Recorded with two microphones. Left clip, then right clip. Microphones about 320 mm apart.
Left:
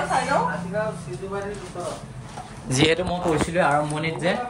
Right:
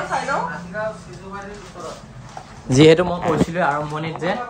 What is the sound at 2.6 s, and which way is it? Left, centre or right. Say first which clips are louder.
Speech: right 8 dB; right.